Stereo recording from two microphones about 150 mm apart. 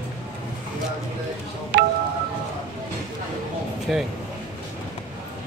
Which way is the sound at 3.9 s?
Centre (ahead or behind).